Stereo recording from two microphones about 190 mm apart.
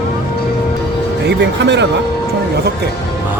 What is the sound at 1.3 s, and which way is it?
Speech, 65° right (ahead or behind).